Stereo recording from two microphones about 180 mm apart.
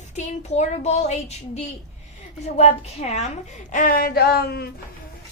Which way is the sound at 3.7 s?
50° left (ahead or behind).